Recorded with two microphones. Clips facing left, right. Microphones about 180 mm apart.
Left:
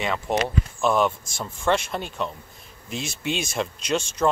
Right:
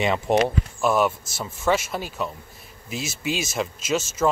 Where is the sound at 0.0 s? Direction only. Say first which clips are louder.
Right 4 dB; 20° right (ahead or behind).